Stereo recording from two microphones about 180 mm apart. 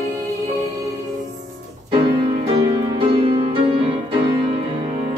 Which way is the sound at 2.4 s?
30° right (ahead or behind).